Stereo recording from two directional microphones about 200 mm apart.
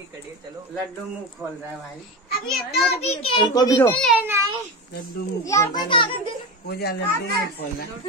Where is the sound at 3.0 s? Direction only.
30° left (ahead or behind); by 4.1 s 10° left (ahead or behind).